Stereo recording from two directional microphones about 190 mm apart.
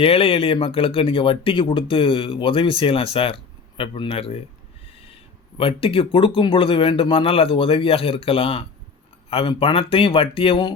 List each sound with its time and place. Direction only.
0.0 s speech: 30° left (ahead or behind)